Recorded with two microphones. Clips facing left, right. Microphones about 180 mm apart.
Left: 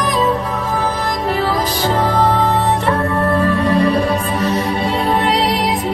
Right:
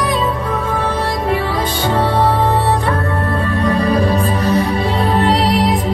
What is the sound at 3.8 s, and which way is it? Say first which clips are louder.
Music: even; 35° right (ahead or behind).